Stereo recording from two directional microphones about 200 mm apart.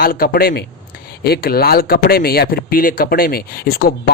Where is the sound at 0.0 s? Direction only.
45° left (ahead or behind).